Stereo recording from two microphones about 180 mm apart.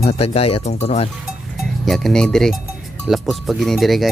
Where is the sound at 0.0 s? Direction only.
35° left (ahead or behind).